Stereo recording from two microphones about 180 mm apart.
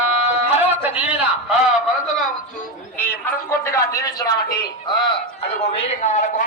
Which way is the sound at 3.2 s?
15° left (ahead or behind).